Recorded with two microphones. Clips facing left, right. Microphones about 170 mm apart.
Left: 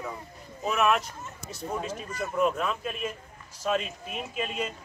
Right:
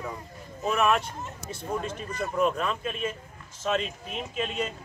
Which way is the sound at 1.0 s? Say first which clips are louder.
Right 4 dB; 30° right (ahead or behind).